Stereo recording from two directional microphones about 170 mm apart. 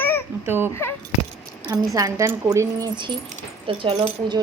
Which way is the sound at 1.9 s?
20° right (ahead or behind).